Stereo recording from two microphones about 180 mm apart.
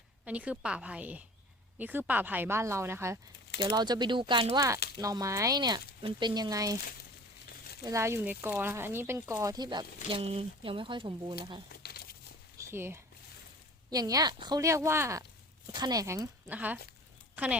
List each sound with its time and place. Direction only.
0.3 s speech: 10° right (ahead or behind)
3.6 s speech: 25° right (ahead or behind)
7.9 s speech: 15° right (ahead or behind)
11.7 s crumpling: 60° left (ahead or behind)
12.5 s a sound: 15° right (ahead or behind)
13.9 s speech: 20° right (ahead or behind)
16.5 s speech: 10° right (ahead or behind)